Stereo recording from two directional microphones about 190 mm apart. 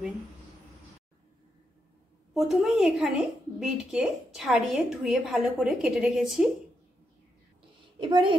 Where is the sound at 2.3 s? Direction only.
Centre (ahead or behind).